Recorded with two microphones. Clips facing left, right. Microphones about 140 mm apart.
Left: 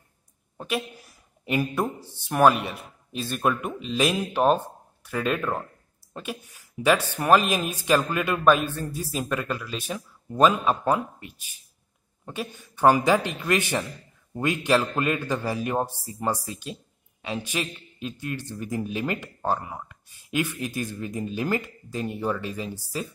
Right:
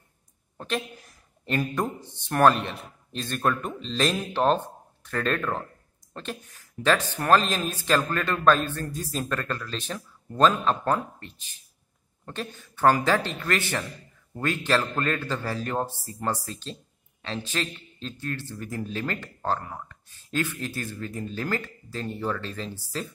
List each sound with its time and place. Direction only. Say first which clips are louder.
0.6 s a woman's voice: left 1 dB; 10° left (ahead or behind)